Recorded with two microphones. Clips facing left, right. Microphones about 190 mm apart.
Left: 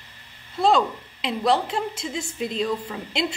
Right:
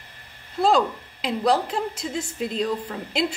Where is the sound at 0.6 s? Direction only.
Centre (ahead or behind).